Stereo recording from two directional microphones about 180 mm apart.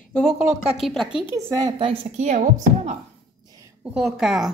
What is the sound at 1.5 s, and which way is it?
Speech, 25° right (ahead or behind).